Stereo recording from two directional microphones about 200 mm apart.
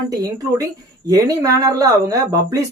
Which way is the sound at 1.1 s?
20° right (ahead or behind).